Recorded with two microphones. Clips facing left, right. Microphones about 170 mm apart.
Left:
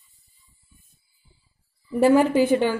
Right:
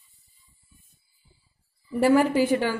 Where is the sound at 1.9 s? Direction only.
20° left (ahead or behind).